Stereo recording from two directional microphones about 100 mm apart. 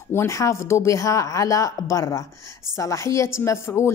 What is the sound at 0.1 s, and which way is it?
Speech, 30° left (ahead or behind).